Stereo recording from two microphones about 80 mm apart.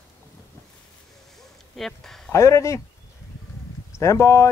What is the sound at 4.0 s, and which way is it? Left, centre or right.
Speech, left.